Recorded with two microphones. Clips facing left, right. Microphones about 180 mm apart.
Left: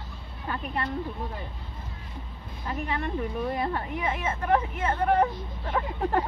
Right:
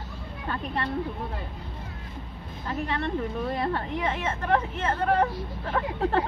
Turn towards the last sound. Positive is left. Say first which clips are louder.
# right 1 dB
turn(degrees=10)  # may be behind; listen again after turning